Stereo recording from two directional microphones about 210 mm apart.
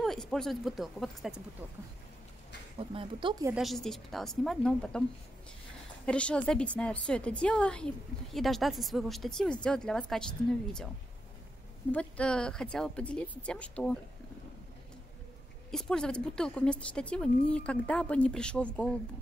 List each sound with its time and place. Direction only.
0.0 s a woman's voice: centre (ahead or behind)
2.8 s speech: 25° right (ahead or behind)
3.5 s a woman's voice: centre (ahead or behind)
6.0 s a woman's voice: 5° left (ahead or behind)
11.9 s a woman's voice: 5° left (ahead or behind)
15.7 s a woman's voice: 5° left (ahead or behind)